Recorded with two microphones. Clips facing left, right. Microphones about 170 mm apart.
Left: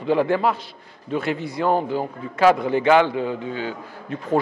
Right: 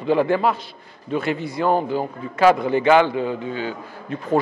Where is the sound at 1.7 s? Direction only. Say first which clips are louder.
Right 1 dB; 35° right (ahead or behind).